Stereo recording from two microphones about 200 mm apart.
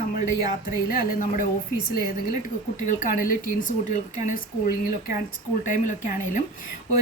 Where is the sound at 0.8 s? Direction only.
40° left (ahead or behind).